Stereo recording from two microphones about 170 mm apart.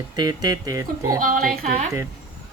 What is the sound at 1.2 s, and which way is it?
Speech, 55° right (ahead or behind).